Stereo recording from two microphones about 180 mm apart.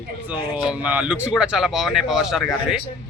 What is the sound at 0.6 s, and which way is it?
Speech, 5° right (ahead or behind).